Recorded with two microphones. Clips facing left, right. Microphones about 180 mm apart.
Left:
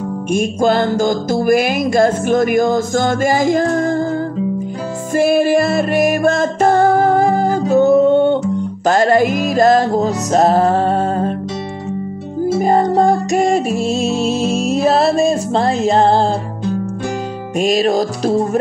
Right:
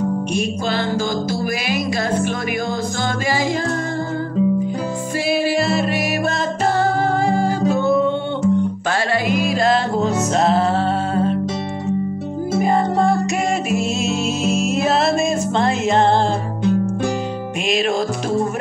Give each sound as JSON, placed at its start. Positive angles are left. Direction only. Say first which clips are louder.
{"t": 0.3, "sound": "music", "louder": "left 7 dB", "side_deg": 45}
{"t": 5.1, "sound": "music", "louder": "left 7 dB", "side_deg": 50}
{"t": 12.6, "sound": "music", "louder": "left 4 dB", "side_deg": 40}
{"t": 17.6, "sound": "music", "louder": "left 6 dB", "side_deg": 40}